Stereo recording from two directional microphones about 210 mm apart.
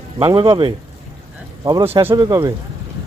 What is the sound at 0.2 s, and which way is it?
Speech, 25° right (ahead or behind).